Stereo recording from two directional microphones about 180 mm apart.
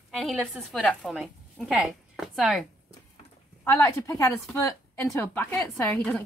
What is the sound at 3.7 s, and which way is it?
A woman's voice, 15° left (ahead or behind).